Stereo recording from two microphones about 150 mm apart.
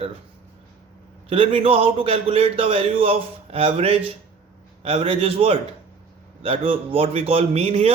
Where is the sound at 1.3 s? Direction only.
40° right (ahead or behind).